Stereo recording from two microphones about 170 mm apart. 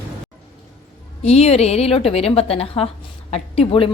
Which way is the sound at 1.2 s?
40° left (ahead or behind).